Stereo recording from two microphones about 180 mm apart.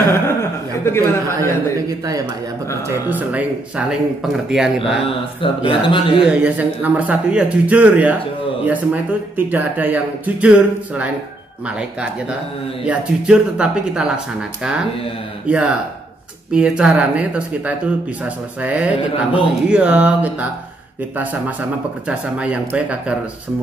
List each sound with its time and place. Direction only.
0.0 s a sound: 15° left (ahead or behind)
1.9 s a man's voice: 20° right (ahead or behind); by 5.0 s centre (ahead or behind)
5.0 s speech: 30° left (ahead or behind)
6.2 s speech: 5° right (ahead or behind)
9.5 s speech: 10° right (ahead or behind)
12.8 s speech: 5° right (ahead or behind)